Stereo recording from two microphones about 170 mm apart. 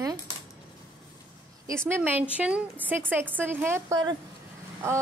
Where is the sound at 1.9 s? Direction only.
10° right (ahead or behind).